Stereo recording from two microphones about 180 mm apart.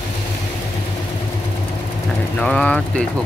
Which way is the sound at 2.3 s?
5° left (ahead or behind).